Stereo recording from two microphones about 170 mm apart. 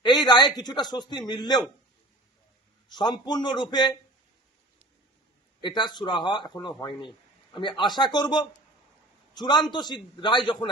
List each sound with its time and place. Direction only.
0.0 s speech: 25° left (ahead or behind)
2.9 s speech: 25° left (ahead or behind)
5.6 s speech: 25° left (ahead or behind)